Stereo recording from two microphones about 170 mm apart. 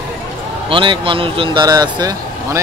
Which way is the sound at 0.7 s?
30° right (ahead or behind).